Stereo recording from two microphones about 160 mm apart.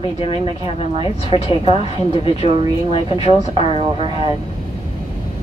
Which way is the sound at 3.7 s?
35° right (ahead or behind).